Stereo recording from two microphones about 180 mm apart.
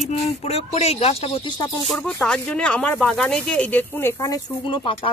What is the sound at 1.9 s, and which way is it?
Speech, 5° left (ahead or behind).